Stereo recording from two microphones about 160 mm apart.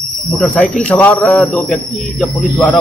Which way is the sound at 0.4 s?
10° left (ahead or behind).